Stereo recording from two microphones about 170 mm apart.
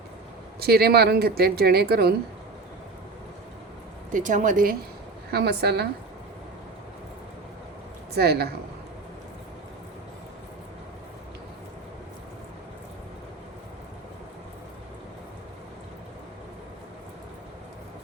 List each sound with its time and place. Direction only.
0.6 s speech: 65° right (ahead or behind)
4.1 s speech: 50° right (ahead or behind)
5.3 s speech: 70° right (ahead or behind)
8.1 s speech: 70° right (ahead or behind)